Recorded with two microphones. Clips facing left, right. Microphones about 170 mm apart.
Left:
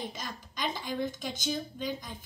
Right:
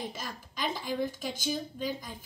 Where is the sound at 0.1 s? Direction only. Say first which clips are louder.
Even; 5° right (ahead or behind).